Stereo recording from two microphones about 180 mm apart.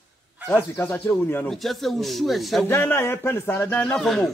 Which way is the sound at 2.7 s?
15° left (ahead or behind).